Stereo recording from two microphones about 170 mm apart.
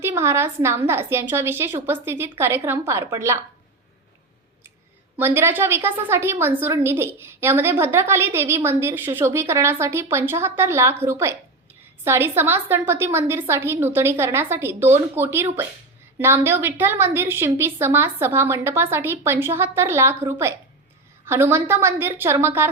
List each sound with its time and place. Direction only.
0.0 s a woman's voice: 15° right (ahead or behind)
5.1 s a woman's voice: 15° right (ahead or behind)